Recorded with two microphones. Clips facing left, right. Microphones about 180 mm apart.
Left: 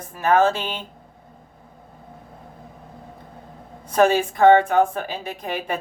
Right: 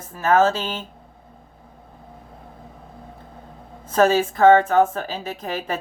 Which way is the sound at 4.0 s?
15° left (ahead or behind).